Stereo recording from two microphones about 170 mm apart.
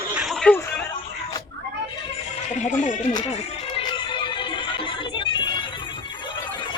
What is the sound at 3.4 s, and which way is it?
Music, 30° left (ahead or behind).